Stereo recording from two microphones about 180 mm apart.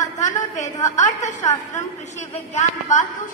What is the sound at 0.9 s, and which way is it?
Speech, 40° left (ahead or behind).